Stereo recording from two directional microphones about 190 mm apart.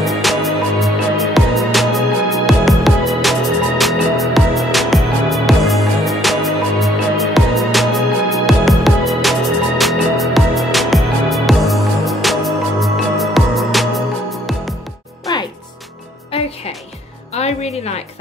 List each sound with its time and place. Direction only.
0.0 s music: centre (ahead or behind)
17.3 s music: 35° left (ahead or behind)